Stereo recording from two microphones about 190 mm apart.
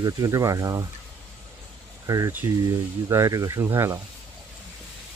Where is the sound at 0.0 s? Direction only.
15° right (ahead or behind).